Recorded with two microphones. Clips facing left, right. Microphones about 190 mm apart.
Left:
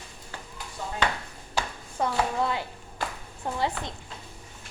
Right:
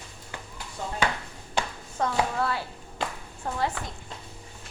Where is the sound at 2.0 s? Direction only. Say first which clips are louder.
Even; 15° left (ahead or behind).